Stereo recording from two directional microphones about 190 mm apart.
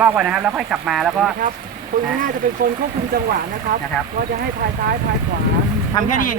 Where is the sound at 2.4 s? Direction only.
45° right (ahead or behind).